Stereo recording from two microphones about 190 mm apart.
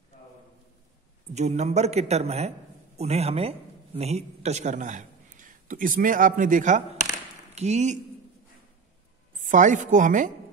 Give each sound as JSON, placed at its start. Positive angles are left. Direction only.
{"t": 1.3, "sound": "a man's voice", "side_deg": -35}
{"t": 9.4, "sound": "a man's voice", "side_deg": -40}